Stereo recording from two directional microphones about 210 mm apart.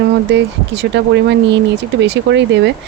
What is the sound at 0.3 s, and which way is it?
Speech, 55° right (ahead or behind).